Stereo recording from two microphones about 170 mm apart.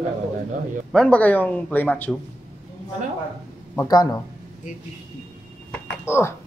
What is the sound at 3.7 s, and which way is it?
Speech, 20° left (ahead or behind).